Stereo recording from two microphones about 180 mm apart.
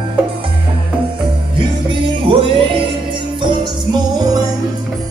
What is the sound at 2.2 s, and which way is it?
Music, 30° right (ahead or behind).